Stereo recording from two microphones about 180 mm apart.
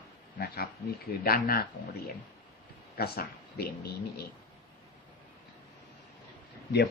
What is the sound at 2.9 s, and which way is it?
Speech, 60° left (ahead or behind).